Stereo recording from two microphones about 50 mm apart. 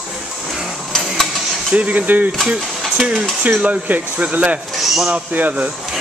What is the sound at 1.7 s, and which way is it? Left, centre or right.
Speech, right.